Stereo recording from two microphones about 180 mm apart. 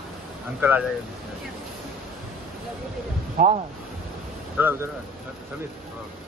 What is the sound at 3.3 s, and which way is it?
Speech, 40° right (ahead or behind).